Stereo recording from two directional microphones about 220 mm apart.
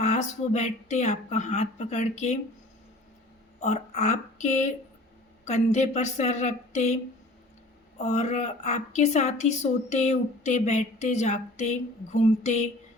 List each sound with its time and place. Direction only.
0.0 s a woman's voice: 30° left (ahead or behind)
3.6 s a woman's voice: 30° left (ahead or behind)